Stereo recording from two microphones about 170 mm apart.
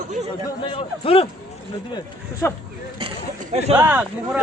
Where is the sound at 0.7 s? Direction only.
35° left (ahead or behind).